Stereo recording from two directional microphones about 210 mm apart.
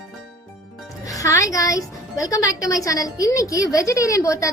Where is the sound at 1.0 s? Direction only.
15° left (ahead or behind).